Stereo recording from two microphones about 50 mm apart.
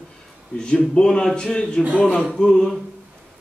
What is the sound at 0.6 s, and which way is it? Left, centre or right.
A man's voice, left.